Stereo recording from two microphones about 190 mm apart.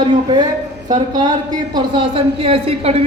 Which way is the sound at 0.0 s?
25° right (ahead or behind).